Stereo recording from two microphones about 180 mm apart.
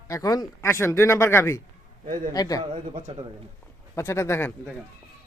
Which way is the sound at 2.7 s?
30° right (ahead or behind).